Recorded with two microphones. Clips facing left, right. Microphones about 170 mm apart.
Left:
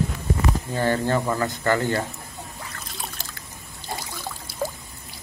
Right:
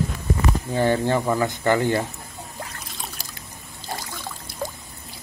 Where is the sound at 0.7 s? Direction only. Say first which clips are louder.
Right 3 dB; 15° right (ahead or behind).